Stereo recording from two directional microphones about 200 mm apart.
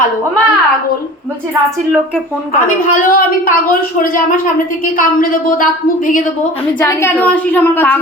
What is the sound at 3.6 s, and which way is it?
A woman's voice, 45° left (ahead or behind).